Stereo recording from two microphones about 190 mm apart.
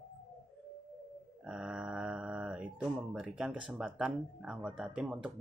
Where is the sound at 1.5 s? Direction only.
5° right (ahead or behind).